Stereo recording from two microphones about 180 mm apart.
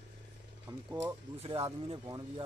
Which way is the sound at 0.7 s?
25° right (ahead or behind).